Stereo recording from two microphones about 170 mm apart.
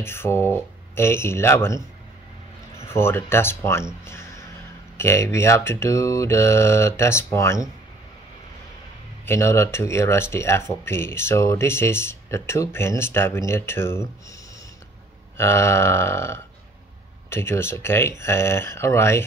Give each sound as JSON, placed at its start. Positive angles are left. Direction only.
{"t": 0.0, "sound": "speech", "side_deg": 15}
{"t": 2.8, "sound": "speech", "side_deg": 15}
{"t": 9.2, "sound": "speech", "side_deg": 15}
{"t": 15.3, "sound": "speech", "side_deg": 15}